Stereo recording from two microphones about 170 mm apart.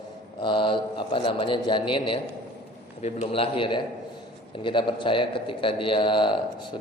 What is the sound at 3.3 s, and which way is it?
A man's voice, 30° left (ahead or behind).